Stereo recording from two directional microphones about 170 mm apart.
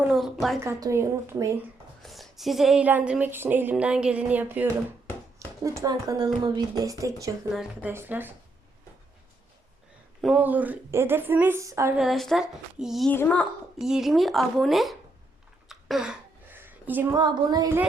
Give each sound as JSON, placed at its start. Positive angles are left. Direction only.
{"t": 0.1, "sound": "speech", "side_deg": 0}
{"t": 0.6, "sound": "speech", "side_deg": -15}
{"t": 2.0, "sound": "speech", "side_deg": 0}
{"t": 7.5, "sound": "speech", "side_deg": -5}
{"t": 10.2, "sound": "speech", "side_deg": -5}
{"t": 11.9, "sound": "speech", "side_deg": 0}
{"t": 13.1, "sound": "a child's voice", "side_deg": 10}
{"t": 13.7, "sound": "speech", "side_deg": -5}
{"t": 15.7, "sound": "a sound", "side_deg": 0}
{"t": 17.2, "sound": "speech", "side_deg": -25}